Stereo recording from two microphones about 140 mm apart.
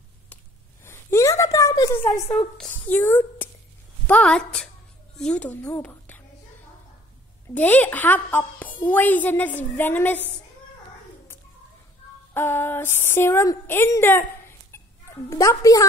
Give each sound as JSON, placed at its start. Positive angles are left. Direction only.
{"t": 0.8, "sound": "a sound", "side_deg": 20}
{"t": 2.3, "sound": "a woman's voice", "side_deg": 5}
{"t": 3.0, "sound": "a woman's voice", "side_deg": 15}
{"t": 7.4, "sound": "a woman's voice", "side_deg": 10}
{"t": 12.4, "sound": "a woman's voice", "side_deg": 15}
{"t": 15.2, "sound": "a woman's voice", "side_deg": 25}